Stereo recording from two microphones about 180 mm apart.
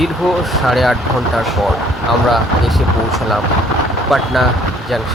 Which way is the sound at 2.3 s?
Centre (ahead or behind).